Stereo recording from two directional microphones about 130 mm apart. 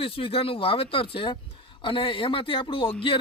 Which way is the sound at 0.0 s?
45° left (ahead or behind).